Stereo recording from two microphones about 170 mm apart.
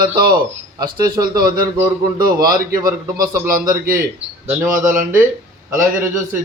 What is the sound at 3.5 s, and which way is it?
Speech, 55° right (ahead or behind).